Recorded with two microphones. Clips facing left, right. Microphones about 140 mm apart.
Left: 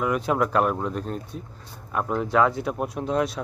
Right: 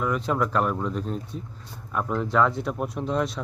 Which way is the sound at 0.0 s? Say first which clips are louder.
Left 2 dB; 10° left (ahead or behind).